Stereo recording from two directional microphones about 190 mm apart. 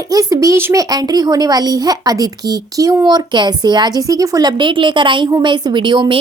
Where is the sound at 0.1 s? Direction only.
20° right (ahead or behind).